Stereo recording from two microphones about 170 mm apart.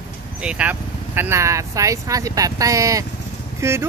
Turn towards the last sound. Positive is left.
turn(degrees=-15)  # may be behind; listen again after turning